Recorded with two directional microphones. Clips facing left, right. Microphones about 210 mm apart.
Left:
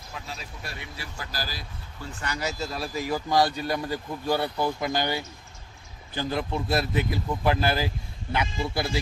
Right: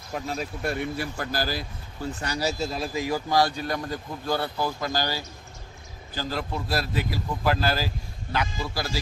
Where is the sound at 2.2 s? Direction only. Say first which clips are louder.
Right 2 dB; 35° right (ahead or behind).